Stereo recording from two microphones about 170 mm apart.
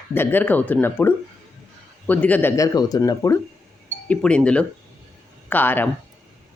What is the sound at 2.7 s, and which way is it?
Speech, 20° left (ahead or behind).